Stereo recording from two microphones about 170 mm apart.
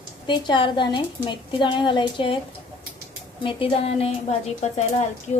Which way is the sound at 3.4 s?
35° left (ahead or behind).